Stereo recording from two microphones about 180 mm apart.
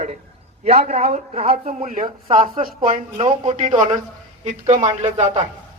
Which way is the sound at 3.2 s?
35° right (ahead or behind).